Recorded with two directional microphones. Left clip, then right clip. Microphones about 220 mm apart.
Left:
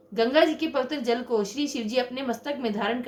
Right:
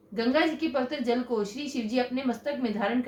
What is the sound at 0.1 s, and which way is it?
A woman's voice, 40° left (ahead or behind).